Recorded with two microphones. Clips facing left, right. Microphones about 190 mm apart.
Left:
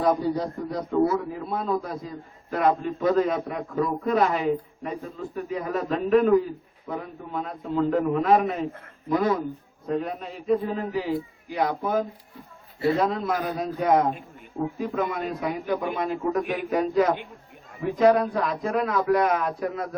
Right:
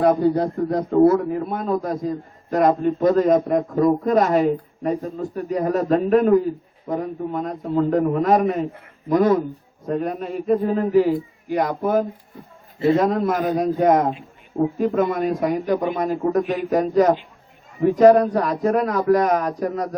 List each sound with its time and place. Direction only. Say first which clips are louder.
0.0 s a man's voice: right 6 dB; 60° right (ahead or behind); by 19.9 s 40° right (ahead or behind)